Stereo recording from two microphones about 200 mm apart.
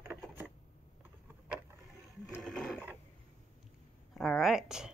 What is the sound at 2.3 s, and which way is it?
Sewing machine, centre (ahead or behind).